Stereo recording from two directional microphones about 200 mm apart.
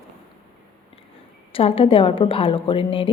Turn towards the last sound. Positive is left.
turn(degrees=25)  # may be behind; listen again after turning